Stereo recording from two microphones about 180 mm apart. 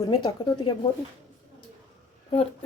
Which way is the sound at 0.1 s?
25° left (ahead or behind).